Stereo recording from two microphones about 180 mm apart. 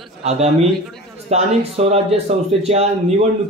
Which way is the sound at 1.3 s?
35° right (ahead or behind).